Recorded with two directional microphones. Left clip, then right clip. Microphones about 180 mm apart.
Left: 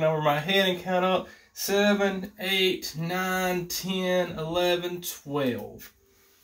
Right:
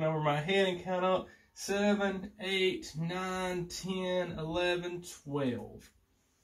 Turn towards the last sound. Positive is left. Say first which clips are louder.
# left 7 dB
turn(degrees=15)  # may be behind; listen again after turning